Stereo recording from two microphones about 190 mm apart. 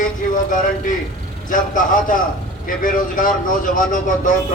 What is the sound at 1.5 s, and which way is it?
Speech, 45° left (ahead or behind).